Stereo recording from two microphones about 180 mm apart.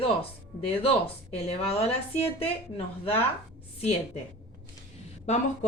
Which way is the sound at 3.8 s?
35° left (ahead or behind).